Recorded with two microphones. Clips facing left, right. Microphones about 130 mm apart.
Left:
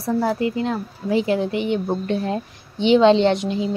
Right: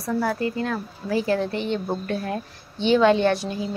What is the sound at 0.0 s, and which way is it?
A woman's voice, 25° left (ahead or behind).